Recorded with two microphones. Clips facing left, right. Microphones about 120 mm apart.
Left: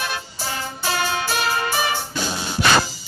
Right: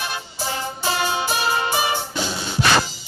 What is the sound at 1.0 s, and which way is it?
Music, 20° right (ahead or behind).